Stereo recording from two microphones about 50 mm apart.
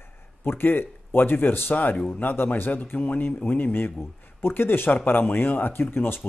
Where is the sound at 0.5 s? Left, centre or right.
Left.